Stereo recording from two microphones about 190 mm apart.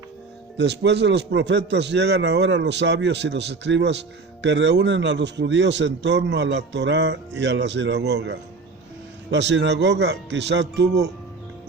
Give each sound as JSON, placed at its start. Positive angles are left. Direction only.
{"t": 0.5, "sound": "a man's voice", "side_deg": -65}